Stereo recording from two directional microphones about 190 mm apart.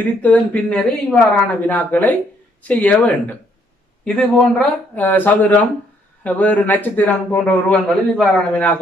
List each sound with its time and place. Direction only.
0.2 s a man's voice: 5° left (ahead or behind)